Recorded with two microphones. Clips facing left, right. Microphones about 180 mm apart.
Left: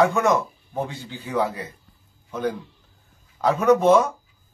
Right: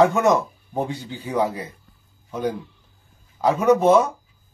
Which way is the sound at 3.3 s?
10° right (ahead or behind).